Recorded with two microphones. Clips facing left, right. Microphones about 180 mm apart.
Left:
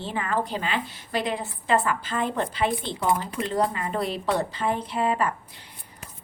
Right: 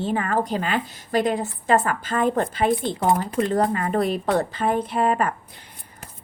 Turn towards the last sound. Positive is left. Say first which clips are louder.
# right 3 dB
turn(degrees=-50)  # may be behind; listen again after turning